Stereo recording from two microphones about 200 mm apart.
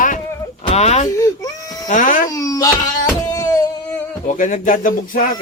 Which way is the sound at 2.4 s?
15° left (ahead or behind).